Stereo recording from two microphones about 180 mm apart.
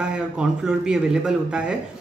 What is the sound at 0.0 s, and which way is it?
A woman's voice, 5° right (ahead or behind).